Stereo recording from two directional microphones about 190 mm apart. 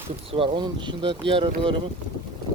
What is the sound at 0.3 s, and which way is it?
Speech, 30° right (ahead or behind).